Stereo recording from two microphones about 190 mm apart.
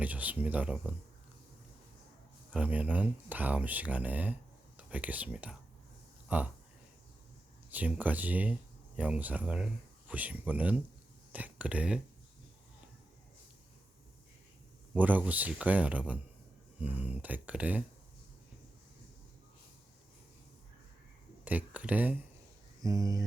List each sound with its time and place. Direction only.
0.0 s speech: 10° right (ahead or behind)
2.5 s speech: 10° right (ahead or behind)
7.7 s speech: 10° right (ahead or behind)
14.9 s speech: 10° right (ahead or behind)
21.4 s speech: 10° right (ahead or behind)
22.8 s speech: 20° right (ahead or behind)